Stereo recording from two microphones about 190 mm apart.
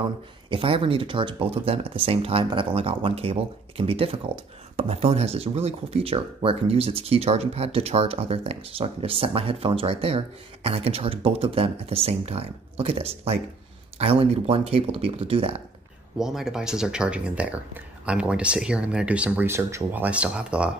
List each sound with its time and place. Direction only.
0.5 s speech: 30° right (ahead or behind)
16.2 s speech: centre (ahead or behind)